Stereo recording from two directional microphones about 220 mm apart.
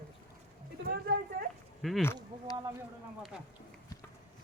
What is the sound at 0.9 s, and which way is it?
Speech, 45° right (ahead or behind).